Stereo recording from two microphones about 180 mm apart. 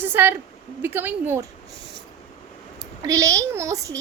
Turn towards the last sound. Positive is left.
turn(degrees=-15)  # may be behind; listen again after turning